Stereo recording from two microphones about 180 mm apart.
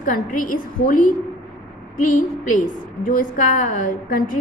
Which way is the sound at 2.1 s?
45° left (ahead or behind).